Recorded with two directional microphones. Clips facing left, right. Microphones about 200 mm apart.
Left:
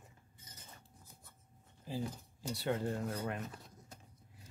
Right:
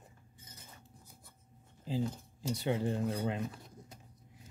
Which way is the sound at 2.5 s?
20° right (ahead or behind).